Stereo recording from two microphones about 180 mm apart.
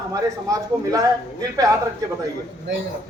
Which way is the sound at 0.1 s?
20° right (ahead or behind).